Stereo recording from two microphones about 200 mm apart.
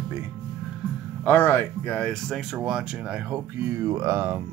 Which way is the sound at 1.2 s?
10° left (ahead or behind).